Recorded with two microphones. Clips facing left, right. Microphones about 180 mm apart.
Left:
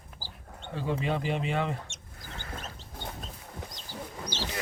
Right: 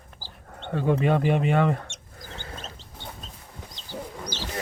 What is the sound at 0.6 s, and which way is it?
Speech, 55° right (ahead or behind).